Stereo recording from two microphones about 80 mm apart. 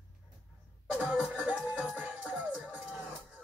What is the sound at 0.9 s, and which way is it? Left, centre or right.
Speech, centre.